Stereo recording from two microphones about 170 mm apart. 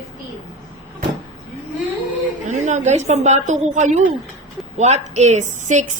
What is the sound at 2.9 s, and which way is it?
A woman's voice, 40° right (ahead or behind).